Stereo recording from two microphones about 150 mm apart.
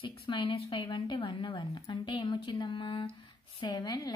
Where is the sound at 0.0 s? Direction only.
30° left (ahead or behind).